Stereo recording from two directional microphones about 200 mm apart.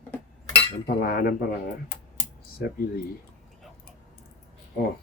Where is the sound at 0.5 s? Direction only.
50° left (ahead or behind).